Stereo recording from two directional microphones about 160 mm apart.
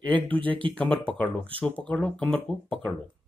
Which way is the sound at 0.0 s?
10° left (ahead or behind).